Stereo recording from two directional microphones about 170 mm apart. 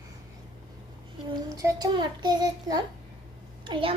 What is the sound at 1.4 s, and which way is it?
A child's voice, 20° right (ahead or behind).